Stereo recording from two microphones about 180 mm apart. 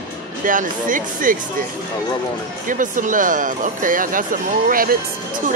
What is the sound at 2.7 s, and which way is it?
Speech, 45° right (ahead or behind).